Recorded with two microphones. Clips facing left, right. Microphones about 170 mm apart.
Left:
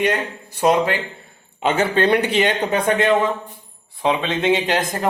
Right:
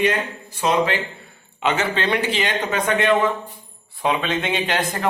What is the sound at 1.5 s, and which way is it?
Speech, 45° left (ahead or behind).